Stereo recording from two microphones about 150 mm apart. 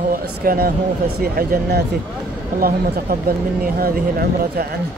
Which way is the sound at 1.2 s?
90° right.